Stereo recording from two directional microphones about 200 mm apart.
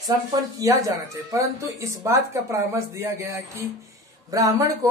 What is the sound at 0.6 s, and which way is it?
Speech, 15° right (ahead or behind).